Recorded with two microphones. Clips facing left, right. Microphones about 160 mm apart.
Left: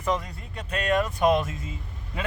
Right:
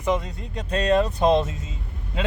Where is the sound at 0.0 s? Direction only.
20° right (ahead or behind).